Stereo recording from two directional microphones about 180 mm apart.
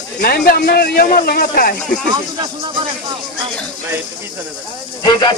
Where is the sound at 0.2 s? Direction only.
55° left (ahead or behind).